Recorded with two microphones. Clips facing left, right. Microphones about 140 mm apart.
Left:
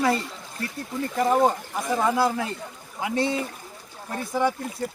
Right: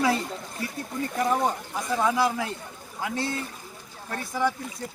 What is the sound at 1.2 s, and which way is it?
Speech, 5° left (ahead or behind).